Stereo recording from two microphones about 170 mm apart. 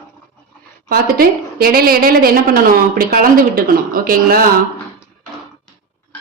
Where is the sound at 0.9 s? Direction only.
60° right (ahead or behind).